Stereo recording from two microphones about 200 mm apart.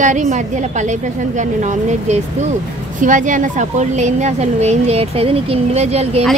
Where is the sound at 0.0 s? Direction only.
35° right (ahead or behind).